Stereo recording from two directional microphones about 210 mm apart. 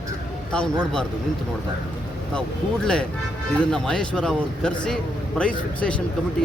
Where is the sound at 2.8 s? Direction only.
5° left (ahead or behind).